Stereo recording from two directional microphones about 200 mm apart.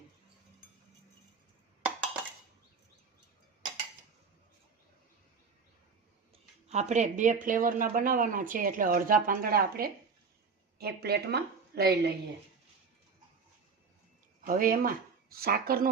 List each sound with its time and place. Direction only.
6.7 s a woman's voice: 35° right (ahead or behind); by 12.1 s 50° right (ahead or behind)
14.4 s speech: 45° right (ahead or behind)